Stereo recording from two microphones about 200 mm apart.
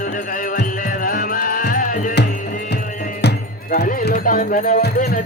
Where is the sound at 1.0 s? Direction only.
45° left (ahead or behind).